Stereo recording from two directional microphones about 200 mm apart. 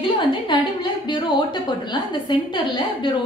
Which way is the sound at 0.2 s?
25° left (ahead or behind).